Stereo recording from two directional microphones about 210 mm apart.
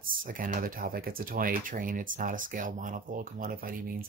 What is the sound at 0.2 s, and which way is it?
Speech, 40° right (ahead or behind).